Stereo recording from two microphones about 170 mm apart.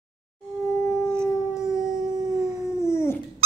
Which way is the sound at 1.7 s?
5° right (ahead or behind).